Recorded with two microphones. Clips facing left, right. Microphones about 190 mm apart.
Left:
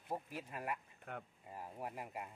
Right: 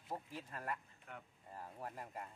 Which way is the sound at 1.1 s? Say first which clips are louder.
Left 6 dB; 55° left (ahead or behind).